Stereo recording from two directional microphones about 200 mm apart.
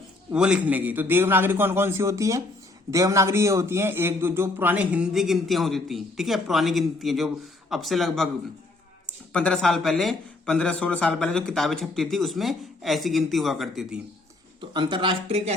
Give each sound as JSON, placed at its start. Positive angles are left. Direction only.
{"t": 0.3, "sound": "a man's voice", "side_deg": -5}
{"t": 9.3, "sound": "speech", "side_deg": 5}
{"t": 14.7, "sound": "speech", "side_deg": -20}